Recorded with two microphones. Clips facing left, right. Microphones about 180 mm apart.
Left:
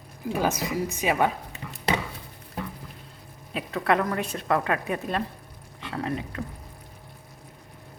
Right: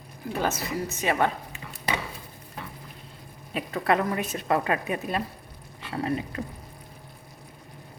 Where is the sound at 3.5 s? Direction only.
Centre (ahead or behind).